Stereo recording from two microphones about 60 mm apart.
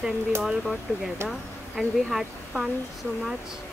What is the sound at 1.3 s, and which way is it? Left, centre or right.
Speech, centre.